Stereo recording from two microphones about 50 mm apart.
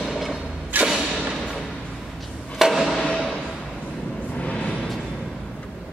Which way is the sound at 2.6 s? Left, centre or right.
Centre.